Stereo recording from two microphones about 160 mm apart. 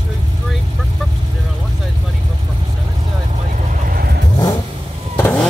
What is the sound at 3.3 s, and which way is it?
Vehicle, 50° right (ahead or behind).